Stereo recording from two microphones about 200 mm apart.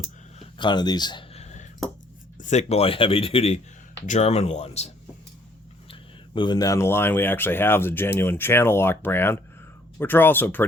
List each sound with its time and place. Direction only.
0.3 s a sound: 20° left (ahead or behind)
2.4 s speech: 35° left (ahead or behind)
5.9 s speech: 25° left (ahead or behind)